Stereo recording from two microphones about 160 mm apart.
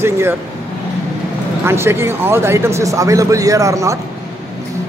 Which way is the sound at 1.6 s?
15° right (ahead or behind).